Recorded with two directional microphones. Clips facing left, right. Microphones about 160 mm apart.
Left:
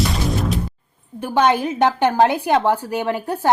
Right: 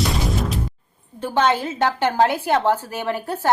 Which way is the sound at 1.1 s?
10° left (ahead or behind).